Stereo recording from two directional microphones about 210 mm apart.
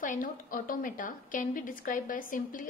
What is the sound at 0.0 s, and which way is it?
A woman's voice, 40° left (ahead or behind).